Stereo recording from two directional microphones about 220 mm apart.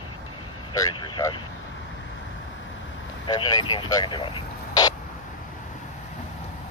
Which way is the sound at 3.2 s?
20° left (ahead or behind).